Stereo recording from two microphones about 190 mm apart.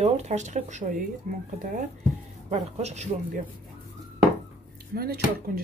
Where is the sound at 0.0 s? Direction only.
40° right (ahead or behind).